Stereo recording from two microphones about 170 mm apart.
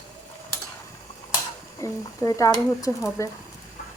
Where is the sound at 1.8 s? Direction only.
20° left (ahead or behind).